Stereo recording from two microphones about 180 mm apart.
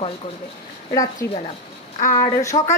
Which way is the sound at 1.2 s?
15° left (ahead or behind).